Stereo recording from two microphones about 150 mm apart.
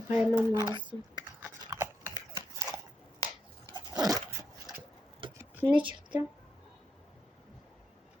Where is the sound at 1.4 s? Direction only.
15° right (ahead or behind).